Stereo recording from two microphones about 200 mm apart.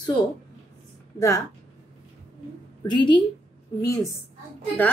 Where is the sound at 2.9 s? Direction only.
20° left (ahead or behind).